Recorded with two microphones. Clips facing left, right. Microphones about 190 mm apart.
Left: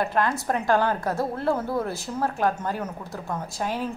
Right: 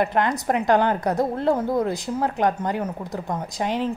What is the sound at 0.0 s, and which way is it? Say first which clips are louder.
A woman's voice: right 3 dB; 20° right (ahead or behind).